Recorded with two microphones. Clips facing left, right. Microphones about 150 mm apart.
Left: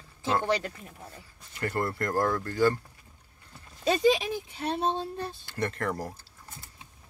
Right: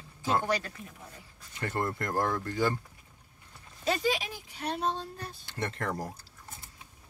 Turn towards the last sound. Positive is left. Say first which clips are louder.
# left 3 dB
turn(degrees=-20)  # may be behind; listen again after turning